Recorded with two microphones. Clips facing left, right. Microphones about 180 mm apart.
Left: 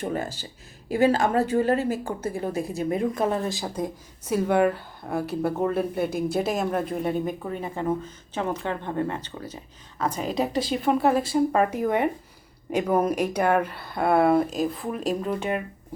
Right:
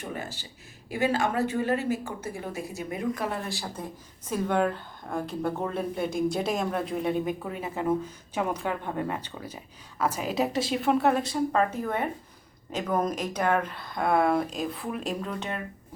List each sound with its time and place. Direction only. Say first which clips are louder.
0.1 s a woman's voice: left 7 dB; 45° left (ahead or behind); by 11.3 s centre (ahead or behind)
11.5 s speech: left 4 dB; 10° left (ahead or behind)